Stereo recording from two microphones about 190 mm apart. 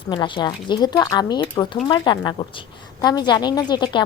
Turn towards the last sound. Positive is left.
turn(degrees=25)  # may be behind; listen again after turning